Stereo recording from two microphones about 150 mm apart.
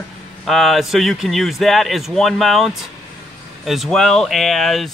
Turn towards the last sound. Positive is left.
turn(degrees=0)  # may be behind; listen again after turning